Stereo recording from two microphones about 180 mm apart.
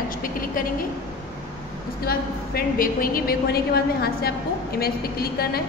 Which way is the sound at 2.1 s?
55° left (ahead or behind).